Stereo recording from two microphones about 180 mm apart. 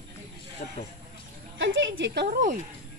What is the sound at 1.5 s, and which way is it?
Speech, 90° right.